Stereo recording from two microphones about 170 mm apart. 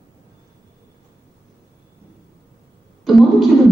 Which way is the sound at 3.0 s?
Centre (ahead or behind).